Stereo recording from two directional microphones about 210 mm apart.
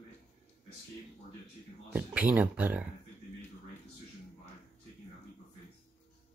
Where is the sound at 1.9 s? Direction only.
5° right (ahead or behind).